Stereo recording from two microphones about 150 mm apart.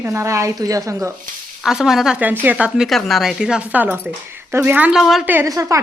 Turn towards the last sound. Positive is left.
turn(degrees=-20)  # may be behind; listen again after turning